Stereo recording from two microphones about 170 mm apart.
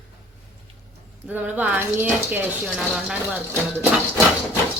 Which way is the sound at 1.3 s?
10° right (ahead or behind).